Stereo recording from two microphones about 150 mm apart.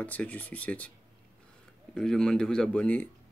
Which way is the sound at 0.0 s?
10° left (ahead or behind).